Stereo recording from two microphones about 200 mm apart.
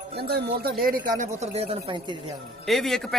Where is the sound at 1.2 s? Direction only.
35° right (ahead or behind).